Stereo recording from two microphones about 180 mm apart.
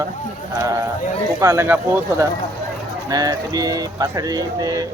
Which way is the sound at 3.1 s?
20° right (ahead or behind).